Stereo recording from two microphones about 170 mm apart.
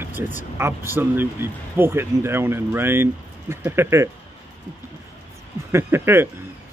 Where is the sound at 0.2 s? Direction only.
15° right (ahead or behind).